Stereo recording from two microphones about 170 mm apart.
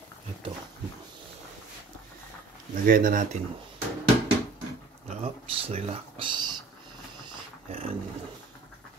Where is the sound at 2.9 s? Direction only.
55° right (ahead or behind).